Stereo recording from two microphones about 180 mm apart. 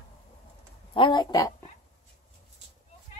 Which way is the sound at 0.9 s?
25° left (ahead or behind).